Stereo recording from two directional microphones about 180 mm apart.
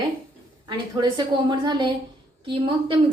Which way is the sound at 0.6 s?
25° right (ahead or behind).